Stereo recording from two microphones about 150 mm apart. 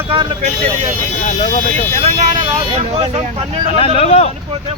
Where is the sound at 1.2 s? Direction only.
55° left (ahead or behind).